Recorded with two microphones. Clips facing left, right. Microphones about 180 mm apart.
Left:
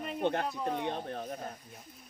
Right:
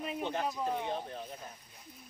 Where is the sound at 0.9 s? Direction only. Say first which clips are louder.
Left 1 dB; 60° left (ahead or behind).